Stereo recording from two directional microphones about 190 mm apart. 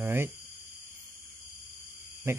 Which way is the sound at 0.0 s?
10° right (ahead or behind).